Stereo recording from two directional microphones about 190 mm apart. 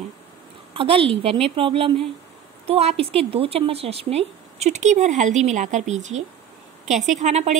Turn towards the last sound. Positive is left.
turn(degrees=-35)  # may be behind; listen again after turning